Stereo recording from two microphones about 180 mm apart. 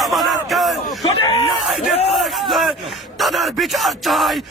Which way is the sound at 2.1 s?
Centre (ahead or behind).